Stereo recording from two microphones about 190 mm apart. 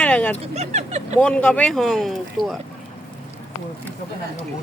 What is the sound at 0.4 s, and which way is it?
Speech, 35° right (ahead or behind).